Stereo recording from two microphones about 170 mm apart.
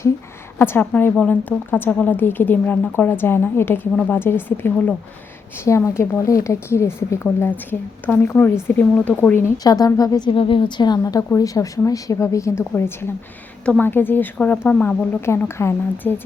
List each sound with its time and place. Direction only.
0.6 s a woman's voice: 10° left (ahead or behind)